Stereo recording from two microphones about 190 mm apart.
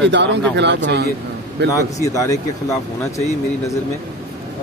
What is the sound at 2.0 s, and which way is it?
Speech, 15° left (ahead or behind).